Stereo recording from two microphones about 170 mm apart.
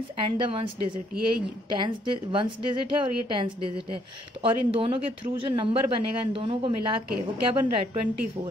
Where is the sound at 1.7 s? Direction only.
30° right (ahead or behind).